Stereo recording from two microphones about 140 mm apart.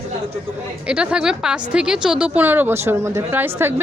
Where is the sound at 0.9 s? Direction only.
5° right (ahead or behind).